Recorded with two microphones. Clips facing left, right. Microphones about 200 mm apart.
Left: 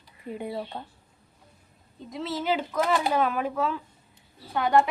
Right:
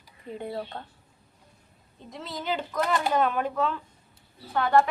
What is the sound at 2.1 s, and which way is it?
A woman's voice, centre (ahead or behind).